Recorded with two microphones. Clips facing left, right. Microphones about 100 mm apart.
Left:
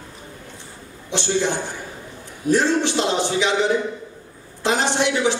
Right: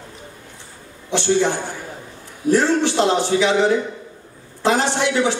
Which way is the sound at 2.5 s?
20° left (ahead or behind).